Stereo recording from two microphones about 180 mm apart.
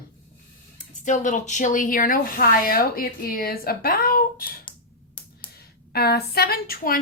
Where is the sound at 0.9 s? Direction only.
45° left (ahead or behind).